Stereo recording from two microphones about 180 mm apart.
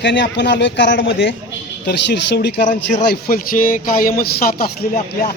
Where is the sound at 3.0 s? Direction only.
55° left (ahead or behind).